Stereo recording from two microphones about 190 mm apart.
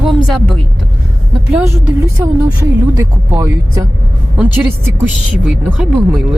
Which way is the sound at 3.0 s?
15° right (ahead or behind).